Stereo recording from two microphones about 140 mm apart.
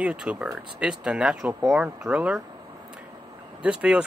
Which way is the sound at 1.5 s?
20° right (ahead or behind).